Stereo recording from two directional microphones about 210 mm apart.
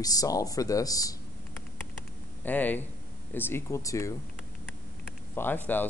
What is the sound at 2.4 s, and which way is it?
Speech, 10° left (ahead or behind).